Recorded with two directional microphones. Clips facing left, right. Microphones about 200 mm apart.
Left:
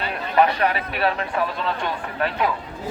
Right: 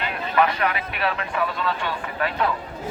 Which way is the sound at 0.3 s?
35° left (ahead or behind).